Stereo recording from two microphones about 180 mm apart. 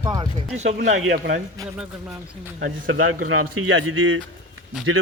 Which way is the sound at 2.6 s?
90° right.